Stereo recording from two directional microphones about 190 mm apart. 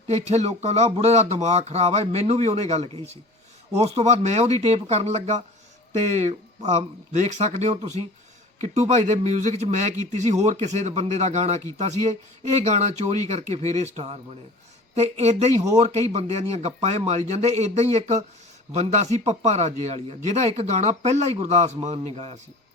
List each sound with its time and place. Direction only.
0.3 s speech: 35° right (ahead or behind)
6.7 s speech: 35° right (ahead or behind)